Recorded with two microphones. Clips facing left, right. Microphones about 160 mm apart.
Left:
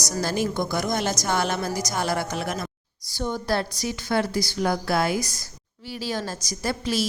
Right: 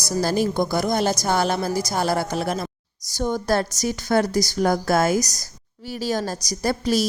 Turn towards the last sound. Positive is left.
turn(degrees=-40)  # may be behind; listen again after turning